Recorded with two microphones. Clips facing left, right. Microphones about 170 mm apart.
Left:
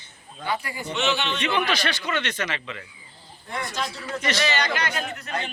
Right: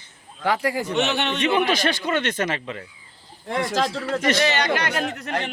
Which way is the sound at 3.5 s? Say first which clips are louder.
Right 8 dB; 90° right.